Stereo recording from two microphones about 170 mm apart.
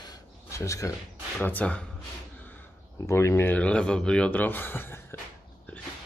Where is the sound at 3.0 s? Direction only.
15° left (ahead or behind).